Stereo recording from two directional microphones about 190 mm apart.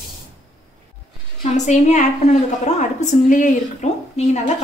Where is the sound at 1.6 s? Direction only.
40° left (ahead or behind).